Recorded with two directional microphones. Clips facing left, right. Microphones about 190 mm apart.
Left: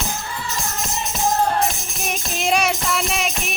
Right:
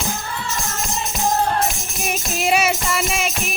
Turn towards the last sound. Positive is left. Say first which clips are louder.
# right 1 dB
turn(degrees=0)  # may be behind; listen again after turning